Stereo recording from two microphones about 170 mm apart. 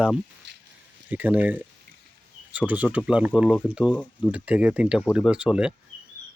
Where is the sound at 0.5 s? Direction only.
90° right.